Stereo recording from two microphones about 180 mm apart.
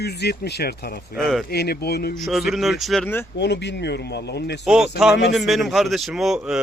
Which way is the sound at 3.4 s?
70° left (ahead or behind).